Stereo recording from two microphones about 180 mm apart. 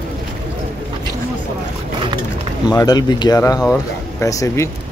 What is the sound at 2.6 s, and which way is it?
Speech, 20° left (ahead or behind).